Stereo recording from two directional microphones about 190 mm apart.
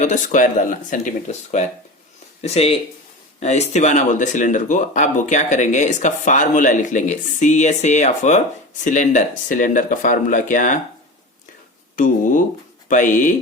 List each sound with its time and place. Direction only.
0.0 s speech: 40° left (ahead or behind)
11.9 s speech: 45° left (ahead or behind)